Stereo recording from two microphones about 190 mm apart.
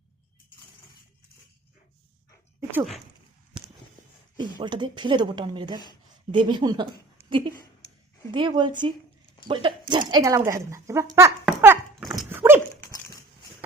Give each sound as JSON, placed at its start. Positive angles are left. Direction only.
{"t": 4.4, "sound": "speech", "side_deg": -25}
{"t": 11.6, "sound": "dog", "side_deg": -10}
{"t": 12.8, "sound": "dog", "side_deg": 15}